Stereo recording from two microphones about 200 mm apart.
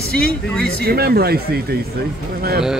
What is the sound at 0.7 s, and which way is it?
Speech, 50° right (ahead or behind).